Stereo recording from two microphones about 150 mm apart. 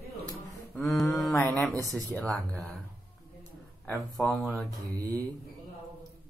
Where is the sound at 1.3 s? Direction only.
15° left (ahead or behind).